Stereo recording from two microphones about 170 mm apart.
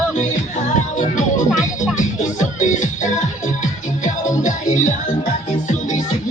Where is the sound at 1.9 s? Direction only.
45° left (ahead or behind).